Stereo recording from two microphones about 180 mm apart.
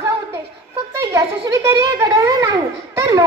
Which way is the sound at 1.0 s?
15° right (ahead or behind).